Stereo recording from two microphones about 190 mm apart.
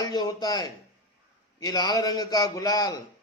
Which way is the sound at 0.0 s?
20° left (ahead or behind).